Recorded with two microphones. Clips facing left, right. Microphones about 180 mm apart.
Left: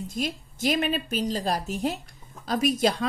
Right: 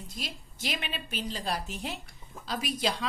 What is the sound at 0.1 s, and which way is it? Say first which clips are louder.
A woman's voice: left 10 dB; 50° left (ahead or behind).